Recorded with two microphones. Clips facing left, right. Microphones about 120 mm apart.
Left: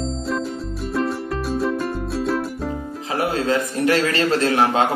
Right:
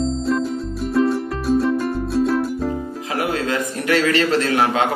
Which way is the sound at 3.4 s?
35° left (ahead or behind).